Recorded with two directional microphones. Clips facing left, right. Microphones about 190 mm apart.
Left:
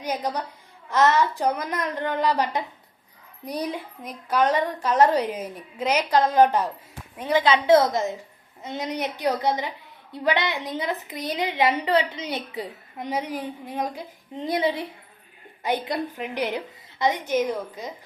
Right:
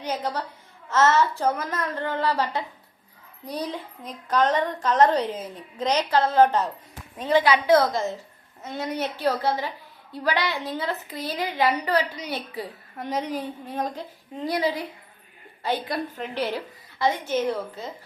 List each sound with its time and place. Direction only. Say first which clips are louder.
0.0 s a woman's voice: left 1 dB; 15° left (ahead or behind)
14.4 s a woman's voice: left 1 dB; 25° left (ahead or behind)